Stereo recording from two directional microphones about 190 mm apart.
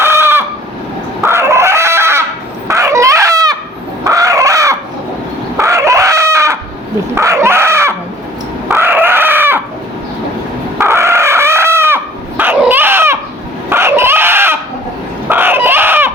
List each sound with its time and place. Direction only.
0.0 s fowl: 10° right (ahead or behind)
1.2 s chicken: 15° right (ahead or behind)
2.6 s a sound: 15° right (ahead or behind)
4.0 s crow: 15° right (ahead or behind)
5.5 s chicken: 15° right (ahead or behind)
7.2 s a sound: 15° right (ahead or behind)
8.7 s chicken: 10° right (ahead or behind)
10.8 s chicken: 15° right (ahead or behind)
12.4 s dog: 10° right (ahead or behind)
13.7 s a sound: 15° right (ahead or behind)